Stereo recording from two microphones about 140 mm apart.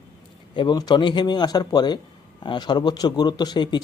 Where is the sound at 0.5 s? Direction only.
30° left (ahead or behind).